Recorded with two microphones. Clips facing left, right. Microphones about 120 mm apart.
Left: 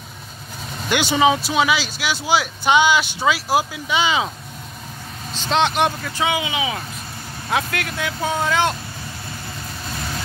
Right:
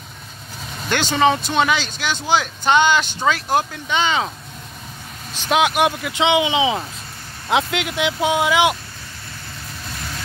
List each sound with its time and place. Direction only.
0.8 s speech: 10° left (ahead or behind)
5.5 s speech: 10° right (ahead or behind)
6.1 s speech: 20° right (ahead or behind)